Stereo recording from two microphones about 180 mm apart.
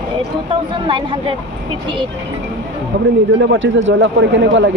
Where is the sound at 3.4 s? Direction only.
90° right.